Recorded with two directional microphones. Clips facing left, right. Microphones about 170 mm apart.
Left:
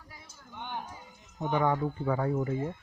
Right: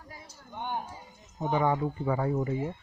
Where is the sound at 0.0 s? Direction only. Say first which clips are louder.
Right 4 dB; 40° right (ahead or behind).